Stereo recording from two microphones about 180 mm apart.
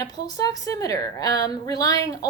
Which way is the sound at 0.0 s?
20° left (ahead or behind).